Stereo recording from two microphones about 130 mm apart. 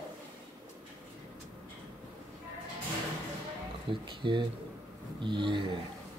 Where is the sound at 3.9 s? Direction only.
40° right (ahead or behind).